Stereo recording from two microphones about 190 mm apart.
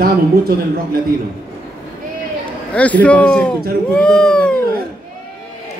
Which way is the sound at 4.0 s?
5° left (ahead or behind).